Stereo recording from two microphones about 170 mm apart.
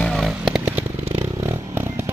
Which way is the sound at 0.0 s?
Centre (ahead or behind).